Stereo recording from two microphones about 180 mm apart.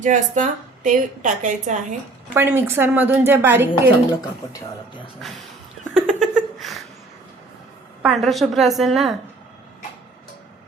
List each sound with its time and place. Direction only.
0.0 s a woman's voice: 45° right (ahead or behind)
2.3 s a woman's voice: 10° right (ahead or behind)
4.2 s speech: 20° left (ahead or behind)
5.9 s a sound: centre (ahead or behind)
8.0 s a woman's voice: centre (ahead or behind)